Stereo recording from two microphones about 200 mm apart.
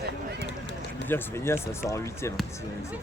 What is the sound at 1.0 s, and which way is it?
Speech, 10° left (ahead or behind).